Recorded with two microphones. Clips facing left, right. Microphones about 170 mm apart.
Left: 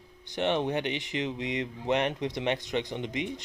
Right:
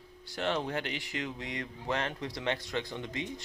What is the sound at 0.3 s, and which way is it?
Speech, 20° left (ahead or behind).